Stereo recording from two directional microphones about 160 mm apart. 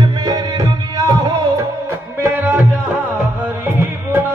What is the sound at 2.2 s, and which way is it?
Music, 10° right (ahead or behind).